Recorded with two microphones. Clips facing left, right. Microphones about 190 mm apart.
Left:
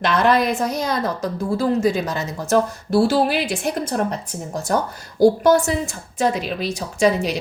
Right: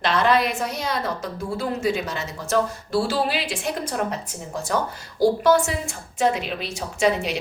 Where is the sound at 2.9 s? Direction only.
55° left (ahead or behind).